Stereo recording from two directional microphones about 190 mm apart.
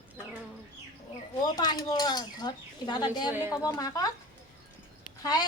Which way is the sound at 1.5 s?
20° left (ahead or behind).